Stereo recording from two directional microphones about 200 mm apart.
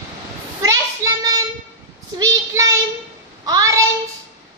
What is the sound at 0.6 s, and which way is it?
Child singing, 15° right (ahead or behind).